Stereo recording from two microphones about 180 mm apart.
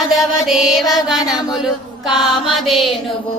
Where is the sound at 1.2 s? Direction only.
20° left (ahead or behind).